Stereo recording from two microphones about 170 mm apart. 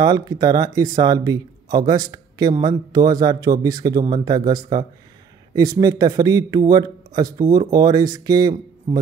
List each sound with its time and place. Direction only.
0.0 s a man's voice: 25° right (ahead or behind)